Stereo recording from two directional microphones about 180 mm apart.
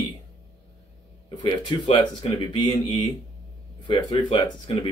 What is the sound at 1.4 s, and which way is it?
Speech, 25° left (ahead or behind).